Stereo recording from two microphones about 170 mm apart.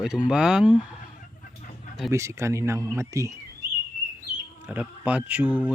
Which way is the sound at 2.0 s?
15° right (ahead or behind).